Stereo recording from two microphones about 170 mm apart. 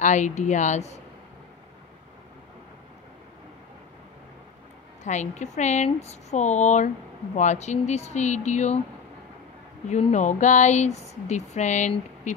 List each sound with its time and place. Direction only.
0.0 s speech: 45° left (ahead or behind)
5.0 s speech: 45° left (ahead or behind)
9.8 s speech: 45° left (ahead or behind)